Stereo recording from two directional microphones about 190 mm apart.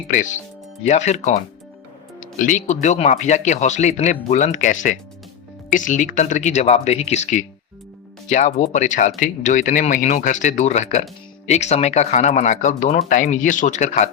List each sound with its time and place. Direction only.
0.1 s speech: 40° left (ahead or behind)